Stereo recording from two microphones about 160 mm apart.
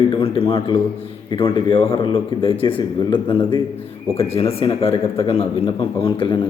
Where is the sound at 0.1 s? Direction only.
35° left (ahead or behind).